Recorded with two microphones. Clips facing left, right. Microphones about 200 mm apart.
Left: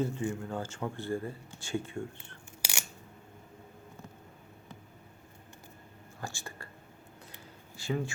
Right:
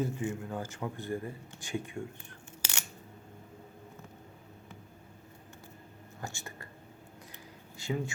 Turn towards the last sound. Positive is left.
turn(degrees=-20)  # may be behind; listen again after turning